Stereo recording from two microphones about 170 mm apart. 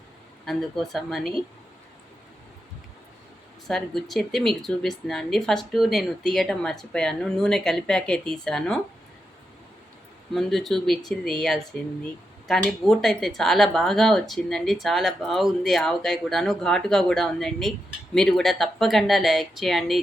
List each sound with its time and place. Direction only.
0.4 s speech: centre (ahead or behind)
3.7 s speech: centre (ahead or behind)
10.3 s speech: centre (ahead or behind)